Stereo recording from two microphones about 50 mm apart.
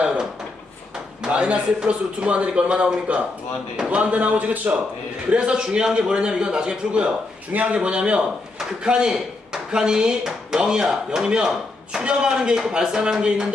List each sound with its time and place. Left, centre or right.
1.3 s speech: right
5.3 s a man's voice: centre